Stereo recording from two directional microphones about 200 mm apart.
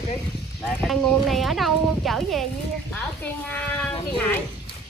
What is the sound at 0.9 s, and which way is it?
Speech, centre (ahead or behind).